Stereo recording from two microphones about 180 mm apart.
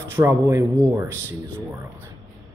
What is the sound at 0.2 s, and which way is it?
Speech, 15° right (ahead or behind).